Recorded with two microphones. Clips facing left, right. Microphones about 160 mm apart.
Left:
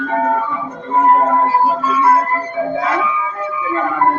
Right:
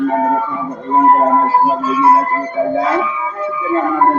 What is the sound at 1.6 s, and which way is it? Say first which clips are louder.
Music: right 2 dB; 20° right (ahead or behind).